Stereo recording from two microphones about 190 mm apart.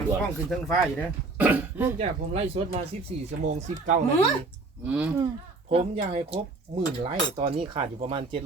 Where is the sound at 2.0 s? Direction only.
35° right (ahead or behind).